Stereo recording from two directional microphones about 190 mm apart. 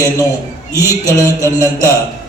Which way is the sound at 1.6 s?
15° right (ahead or behind).